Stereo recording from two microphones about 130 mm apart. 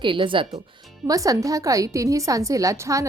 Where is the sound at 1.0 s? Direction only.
25° right (ahead or behind).